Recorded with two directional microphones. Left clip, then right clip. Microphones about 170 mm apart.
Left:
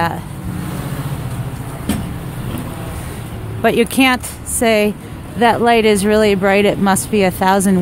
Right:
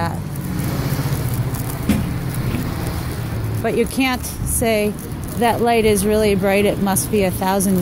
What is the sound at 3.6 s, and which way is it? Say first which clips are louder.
Speech: left 6 dB; 45° left (ahead or behind).